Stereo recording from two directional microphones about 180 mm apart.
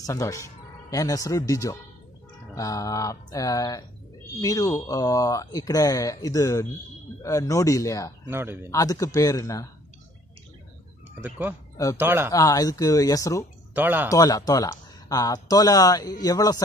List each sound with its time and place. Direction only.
0.0 s speech: 20° left (ahead or behind)
8.3 s a man's voice: 15° right (ahead or behind)
8.6 s speech: 20° left (ahead or behind)
11.1 s speech: 10° right (ahead or behind)
11.7 s speech: 20° left (ahead or behind)
12.0 s a man's voice: 10° right (ahead or behind)
12.3 s speech: 20° left (ahead or behind)
13.7 s a man's voice: 10° right (ahead or behind)
14.1 s speech: 20° left (ahead or behind)